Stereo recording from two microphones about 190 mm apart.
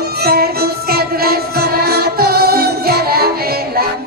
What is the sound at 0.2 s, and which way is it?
Music, 55° right (ahead or behind).